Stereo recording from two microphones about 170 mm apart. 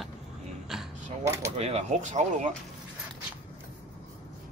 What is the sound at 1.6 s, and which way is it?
Speech, 40° right (ahead or behind).